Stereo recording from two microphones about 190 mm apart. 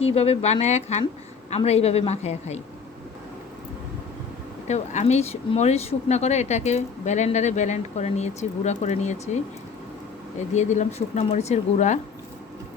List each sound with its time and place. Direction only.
0.0 s speech: 30° left (ahead or behind)
4.7 s speech: 35° left (ahead or behind)
10.5 s speech: 40° left (ahead or behind)